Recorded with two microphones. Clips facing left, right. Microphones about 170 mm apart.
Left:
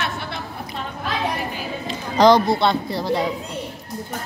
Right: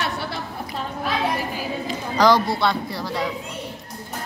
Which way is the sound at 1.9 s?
20° left (ahead or behind).